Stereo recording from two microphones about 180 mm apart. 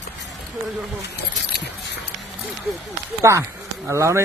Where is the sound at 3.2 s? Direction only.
15° right (ahead or behind).